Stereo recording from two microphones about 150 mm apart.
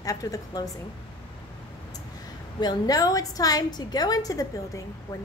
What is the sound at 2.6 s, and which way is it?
A woman's voice, 25° left (ahead or behind).